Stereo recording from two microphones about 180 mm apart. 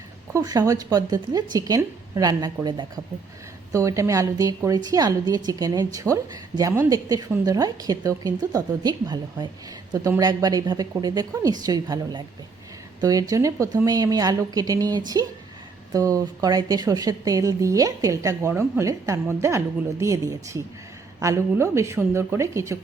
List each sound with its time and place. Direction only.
0.3 s a woman's voice: 20° right (ahead or behind)